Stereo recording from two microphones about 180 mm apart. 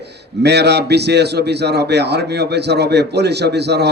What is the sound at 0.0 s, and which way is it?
A man's voice, 70° right (ahead or behind).